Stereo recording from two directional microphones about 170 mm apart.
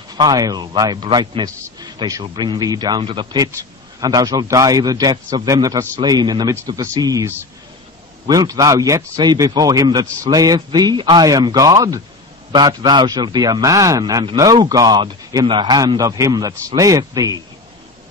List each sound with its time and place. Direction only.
0.1 s a man's voice: 25° right (ahead or behind)